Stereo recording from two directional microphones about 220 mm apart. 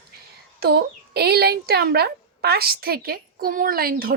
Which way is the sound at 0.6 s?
45° right (ahead or behind).